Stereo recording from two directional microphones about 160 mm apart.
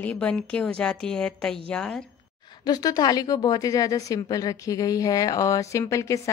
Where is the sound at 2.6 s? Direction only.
25° left (ahead or behind).